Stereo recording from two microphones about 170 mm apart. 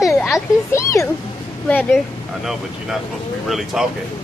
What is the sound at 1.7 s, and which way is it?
Speech, 10° left (ahead or behind).